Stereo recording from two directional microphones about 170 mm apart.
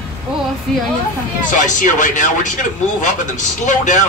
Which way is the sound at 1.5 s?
45° left (ahead or behind).